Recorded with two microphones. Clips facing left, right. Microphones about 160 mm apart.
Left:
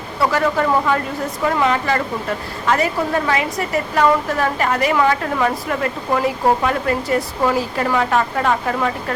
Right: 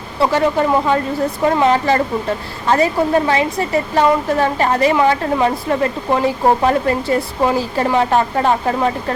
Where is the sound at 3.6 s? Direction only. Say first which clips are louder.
Right 2 dB; 30° right (ahead or behind).